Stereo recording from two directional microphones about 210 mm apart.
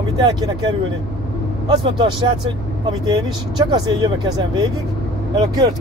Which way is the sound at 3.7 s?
20° right (ahead or behind).